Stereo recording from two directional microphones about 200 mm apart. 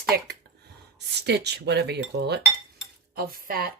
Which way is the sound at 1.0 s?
55° right (ahead or behind).